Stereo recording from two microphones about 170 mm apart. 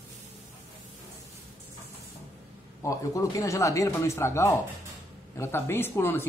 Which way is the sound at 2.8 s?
20° left (ahead or behind).